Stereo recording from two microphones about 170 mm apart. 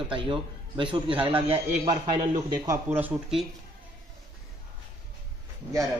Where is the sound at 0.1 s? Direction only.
30° right (ahead or behind).